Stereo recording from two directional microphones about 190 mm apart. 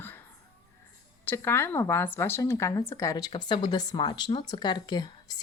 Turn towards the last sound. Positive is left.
turn(degrees=20)  # may be behind; listen again after turning